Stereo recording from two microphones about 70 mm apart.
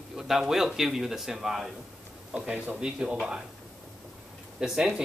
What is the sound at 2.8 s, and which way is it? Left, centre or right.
Speech, centre.